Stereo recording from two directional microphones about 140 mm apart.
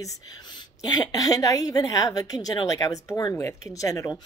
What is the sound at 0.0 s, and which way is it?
A woman's voice, 25° left (ahead or behind).